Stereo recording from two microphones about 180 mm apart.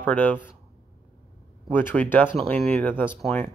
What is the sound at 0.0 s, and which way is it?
Speech, 10° left (ahead or behind).